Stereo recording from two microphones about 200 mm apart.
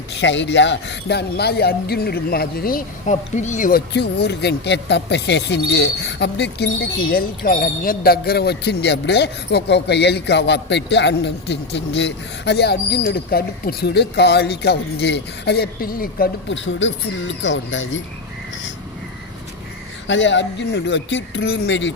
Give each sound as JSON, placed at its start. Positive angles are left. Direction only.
{"t": 0.1, "sound": "speech", "side_deg": 60}
{"t": 7.1, "sound": "speech", "side_deg": 45}
{"t": 16.5, "sound": "speech", "side_deg": 70}
{"t": 20.1, "sound": "speech", "side_deg": 65}